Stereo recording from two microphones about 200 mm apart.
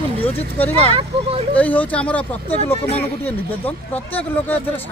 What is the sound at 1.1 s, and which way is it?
Speech, 25° right (ahead or behind).